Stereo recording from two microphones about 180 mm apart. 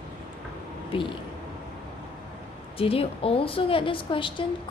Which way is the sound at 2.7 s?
30° left (ahead or behind).